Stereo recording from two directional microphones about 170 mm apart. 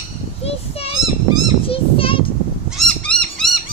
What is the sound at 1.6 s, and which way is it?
Child singing, 35° left (ahead or behind).